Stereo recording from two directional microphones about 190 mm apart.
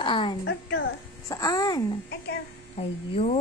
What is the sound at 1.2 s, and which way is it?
Speech, 20° left (ahead or behind).